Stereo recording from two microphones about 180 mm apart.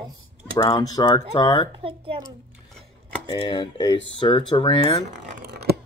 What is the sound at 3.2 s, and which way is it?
Speech, 25° left (ahead or behind).